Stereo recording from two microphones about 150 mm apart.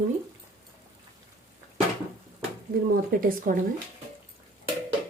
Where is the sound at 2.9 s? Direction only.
75° right (ahead or behind).